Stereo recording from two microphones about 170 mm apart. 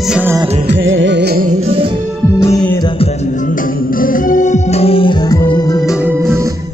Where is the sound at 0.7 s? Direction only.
90° right; by 1.5 s 70° right (ahead or behind).